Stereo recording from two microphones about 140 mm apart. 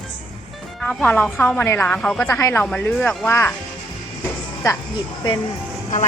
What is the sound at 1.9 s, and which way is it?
Speech, 5° left (ahead or behind).